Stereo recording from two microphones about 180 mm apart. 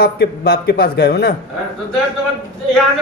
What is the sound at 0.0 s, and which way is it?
A man's voice, 60° left (ahead or behind).